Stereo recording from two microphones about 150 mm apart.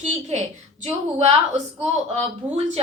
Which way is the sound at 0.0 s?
45° right (ahead or behind).